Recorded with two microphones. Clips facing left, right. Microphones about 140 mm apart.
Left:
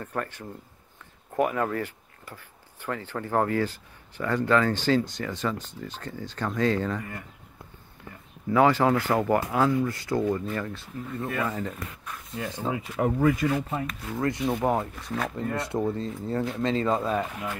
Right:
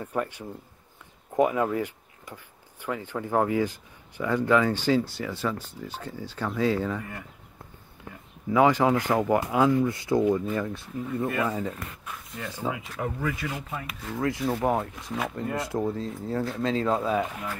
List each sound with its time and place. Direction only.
0.0 s speech: 10° right (ahead or behind)
8.5 s speech: 10° right (ahead or behind)
12.4 s speech: 15° left (ahead or behind)
13.0 s speech: 45° left (ahead or behind)
13.5 s speech: 25° left (ahead or behind)
13.8 s speech: centre (ahead or behind)